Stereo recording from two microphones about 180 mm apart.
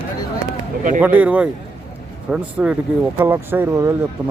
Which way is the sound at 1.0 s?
10° right (ahead or behind).